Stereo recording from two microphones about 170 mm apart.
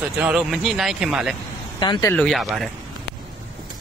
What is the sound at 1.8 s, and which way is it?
Speech, 25° left (ahead or behind).